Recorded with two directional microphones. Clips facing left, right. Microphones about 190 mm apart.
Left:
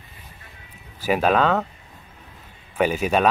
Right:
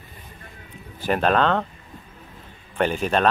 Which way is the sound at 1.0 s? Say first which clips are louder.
Left 1 dB; 5° left (ahead or behind).